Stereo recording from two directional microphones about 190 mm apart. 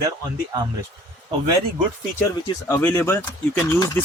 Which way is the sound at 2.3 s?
20° left (ahead or behind).